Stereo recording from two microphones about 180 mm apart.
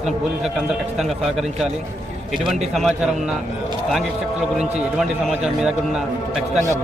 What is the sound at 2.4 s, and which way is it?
Speech, centre (ahead or behind).